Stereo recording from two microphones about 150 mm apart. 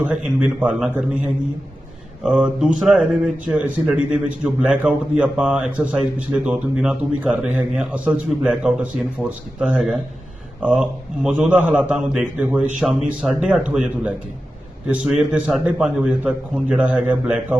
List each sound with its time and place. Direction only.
0.0 s speech: 5° right (ahead or behind)